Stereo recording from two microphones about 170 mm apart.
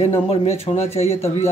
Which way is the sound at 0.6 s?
35° left (ahead or behind).